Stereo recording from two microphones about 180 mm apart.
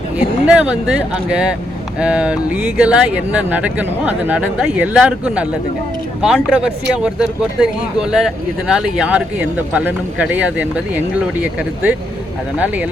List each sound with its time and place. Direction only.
0.4 s speech: 5° right (ahead or behind)